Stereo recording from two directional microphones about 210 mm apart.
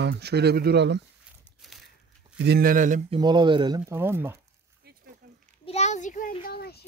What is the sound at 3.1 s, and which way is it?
Speech, 20° right (ahead or behind).